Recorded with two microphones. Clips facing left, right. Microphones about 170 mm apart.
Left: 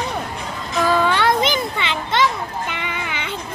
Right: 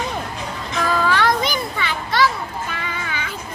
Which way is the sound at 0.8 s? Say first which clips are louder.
Left 2 dB; 25° left (ahead or behind).